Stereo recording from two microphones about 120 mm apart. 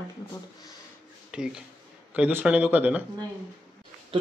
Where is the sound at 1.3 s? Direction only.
5° right (ahead or behind).